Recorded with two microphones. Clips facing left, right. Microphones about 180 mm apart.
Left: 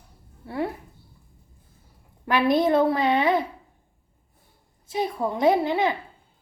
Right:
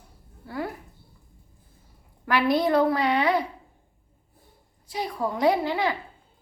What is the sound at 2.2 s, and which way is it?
A woman's voice, 20° left (ahead or behind).